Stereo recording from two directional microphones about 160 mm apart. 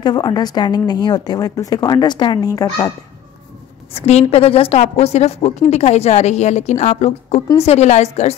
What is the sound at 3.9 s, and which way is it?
A woman's voice, 40° left (ahead or behind).